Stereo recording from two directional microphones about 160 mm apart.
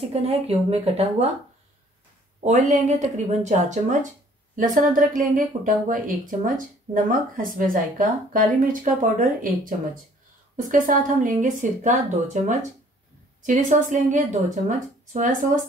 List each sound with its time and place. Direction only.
0.1 s a woman's voice: 40° right (ahead or behind)
2.4 s speech: 50° right (ahead or behind)